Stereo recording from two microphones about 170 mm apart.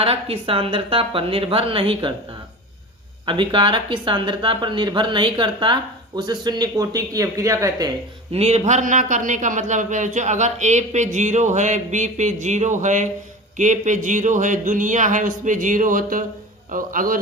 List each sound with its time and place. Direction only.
0.0 s a woman's voice: 35° right (ahead or behind)
3.2 s speech: 30° right (ahead or behind)
8.3 s speech: 40° right (ahead or behind); by 17.2 s 55° right (ahead or behind)